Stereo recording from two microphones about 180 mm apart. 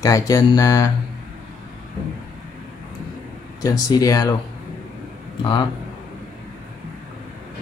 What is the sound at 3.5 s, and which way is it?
Speech, 20° left (ahead or behind).